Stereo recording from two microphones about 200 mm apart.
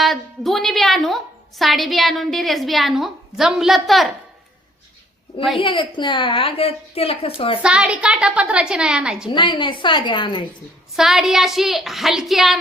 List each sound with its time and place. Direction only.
0.0 s a woman's voice: centre (ahead or behind)
5.5 s a woman's voice: 25° left (ahead or behind)
7.6 s a woman's voice: 5° right (ahead or behind)
9.3 s a woman's voice: 25° left (ahead or behind)
10.9 s a woman's voice: centre (ahead or behind)